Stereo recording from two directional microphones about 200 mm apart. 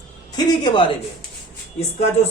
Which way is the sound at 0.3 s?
20° left (ahead or behind).